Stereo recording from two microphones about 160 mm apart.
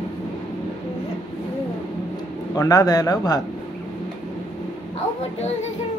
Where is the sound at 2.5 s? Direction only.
25° left (ahead or behind).